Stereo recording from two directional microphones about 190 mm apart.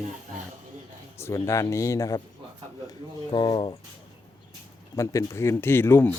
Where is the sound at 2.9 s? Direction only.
25° left (ahead or behind).